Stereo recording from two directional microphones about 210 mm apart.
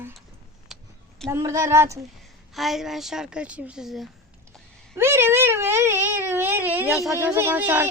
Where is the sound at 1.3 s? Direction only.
15° right (ahead or behind).